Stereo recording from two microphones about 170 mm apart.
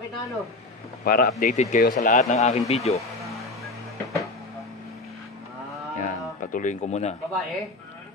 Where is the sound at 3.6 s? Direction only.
20° left (ahead or behind).